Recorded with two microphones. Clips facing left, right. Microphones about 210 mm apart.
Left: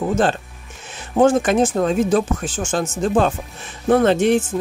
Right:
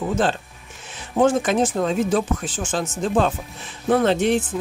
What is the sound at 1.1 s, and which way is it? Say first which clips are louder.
Speech: left 3 dB; 45° left (ahead or behind).